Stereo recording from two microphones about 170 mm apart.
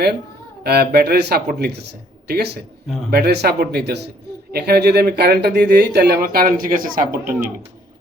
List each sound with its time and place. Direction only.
0.6 s speech: 70° right (ahead or behind)
2.8 s a man's voice: centre (ahead or behind)
3.1 s speech: 70° right (ahead or behind)